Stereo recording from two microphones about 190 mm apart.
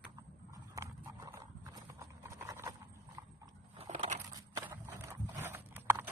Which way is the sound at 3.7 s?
35° right (ahead or behind).